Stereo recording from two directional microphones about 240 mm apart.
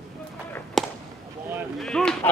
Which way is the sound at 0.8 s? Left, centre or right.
Centre.